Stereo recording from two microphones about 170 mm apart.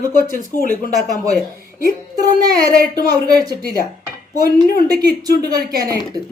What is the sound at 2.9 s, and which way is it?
Speech, 25° right (ahead or behind).